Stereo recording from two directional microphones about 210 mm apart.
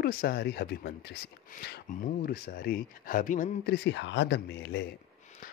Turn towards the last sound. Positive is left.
turn(degrees=55)  # may be behind; listen again after turning